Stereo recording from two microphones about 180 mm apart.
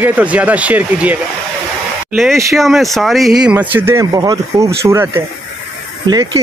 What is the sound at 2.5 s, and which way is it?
Speech, centre (ahead or behind).